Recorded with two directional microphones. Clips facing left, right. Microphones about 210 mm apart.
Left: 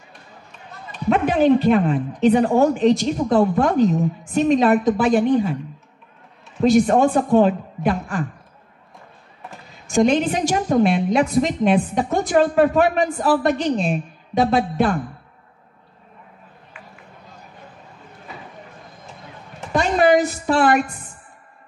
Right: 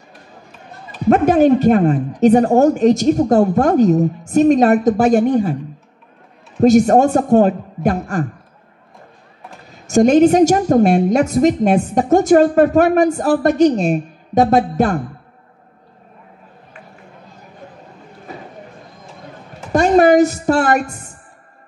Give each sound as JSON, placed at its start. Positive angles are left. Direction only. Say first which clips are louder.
{"t": 1.0, "sound": "a woman's voice", "louder": "right 5 dB", "side_deg": -45}
{"t": 6.6, "sound": "a woman's voice", "louder": "right 4 dB", "side_deg": -45}
{"t": 9.8, "sound": "a woman's voice", "louder": "right 7 dB", "side_deg": -45}
{"t": 19.7, "sound": "a woman's voice", "louder": "right 5 dB", "side_deg": -45}